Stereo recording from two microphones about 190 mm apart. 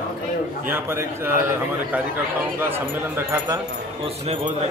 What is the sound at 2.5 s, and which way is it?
Speech, 10° right (ahead or behind).